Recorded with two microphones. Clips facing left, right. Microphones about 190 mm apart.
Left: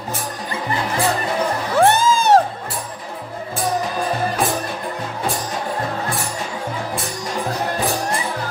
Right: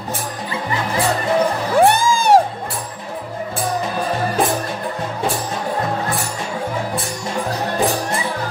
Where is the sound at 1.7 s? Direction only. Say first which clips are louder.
Even; 10° right (ahead or behind).